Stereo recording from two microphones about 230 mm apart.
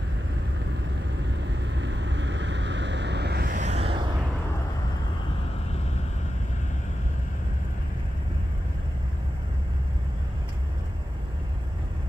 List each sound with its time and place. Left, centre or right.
1.2 s vehicle: right